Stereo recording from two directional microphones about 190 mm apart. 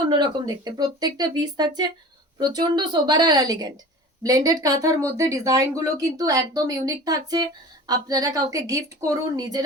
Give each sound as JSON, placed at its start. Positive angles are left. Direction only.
{"t": 0.1, "sound": "a woman's voice", "side_deg": -25}